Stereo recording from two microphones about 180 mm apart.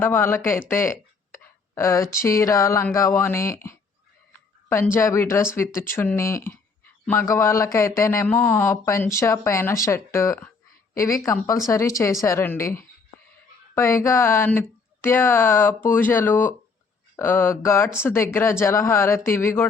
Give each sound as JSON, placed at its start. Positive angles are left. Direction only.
{"t": 0.0, "sound": "speech", "side_deg": 10}
{"t": 4.9, "sound": "speech", "side_deg": 15}